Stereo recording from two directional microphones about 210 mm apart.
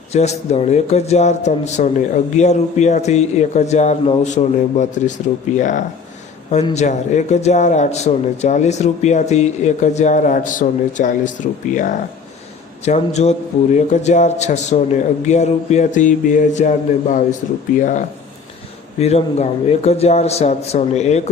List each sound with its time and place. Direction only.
0.1 s a man's voice: 30° left (ahead or behind)